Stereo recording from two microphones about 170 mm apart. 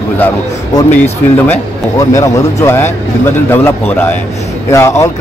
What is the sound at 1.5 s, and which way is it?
A man's voice, 20° left (ahead or behind).